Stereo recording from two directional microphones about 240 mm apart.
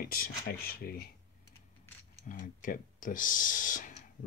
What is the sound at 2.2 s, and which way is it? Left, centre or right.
Speech, left.